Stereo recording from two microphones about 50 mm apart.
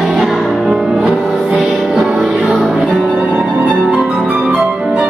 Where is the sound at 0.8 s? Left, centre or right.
Centre.